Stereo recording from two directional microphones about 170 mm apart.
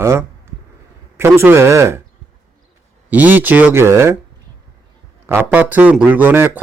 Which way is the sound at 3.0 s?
10° right (ahead or behind).